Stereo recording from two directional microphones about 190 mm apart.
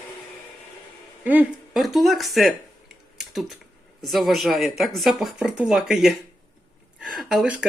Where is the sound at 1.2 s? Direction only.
10° right (ahead or behind).